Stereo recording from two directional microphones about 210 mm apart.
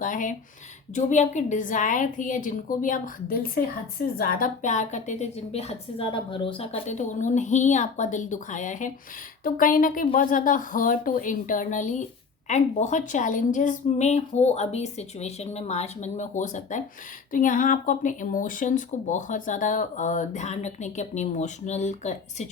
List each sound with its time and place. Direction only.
0.0 s speech: 40° left (ahead or behind)